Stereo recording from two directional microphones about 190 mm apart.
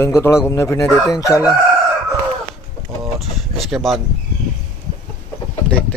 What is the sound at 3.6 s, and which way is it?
Speech, centre (ahead or behind).